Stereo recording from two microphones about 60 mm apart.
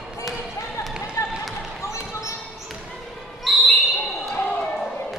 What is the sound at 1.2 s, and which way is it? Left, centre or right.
Basketball bounce, left.